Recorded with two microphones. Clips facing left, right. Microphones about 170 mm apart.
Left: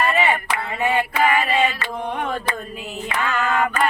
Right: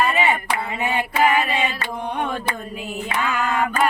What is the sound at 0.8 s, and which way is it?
Female singing, 20° right (ahead or behind).